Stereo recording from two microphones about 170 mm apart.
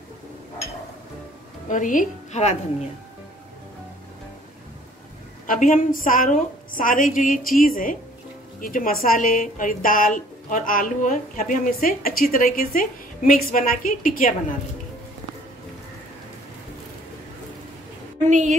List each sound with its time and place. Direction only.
1.7 s speech: 50° left (ahead or behind)
5.5 s a woman's voice: 50° left (ahead or behind)
18.3 s music: 45° right (ahead or behind)